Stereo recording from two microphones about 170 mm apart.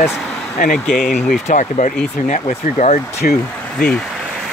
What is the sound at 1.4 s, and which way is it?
Speech, 45° left (ahead or behind).